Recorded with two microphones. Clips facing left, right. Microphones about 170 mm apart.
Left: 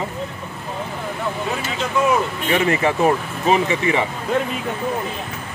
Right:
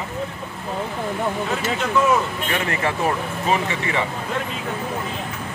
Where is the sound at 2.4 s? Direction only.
20° left (ahead or behind).